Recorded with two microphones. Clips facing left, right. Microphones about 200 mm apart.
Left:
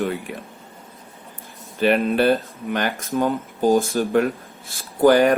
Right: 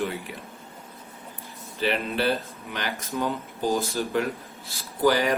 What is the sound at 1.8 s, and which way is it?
Speech, 50° left (ahead or behind).